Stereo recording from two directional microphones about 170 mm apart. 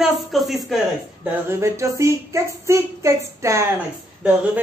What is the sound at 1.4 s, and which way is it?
A woman's voice, 15° right (ahead or behind).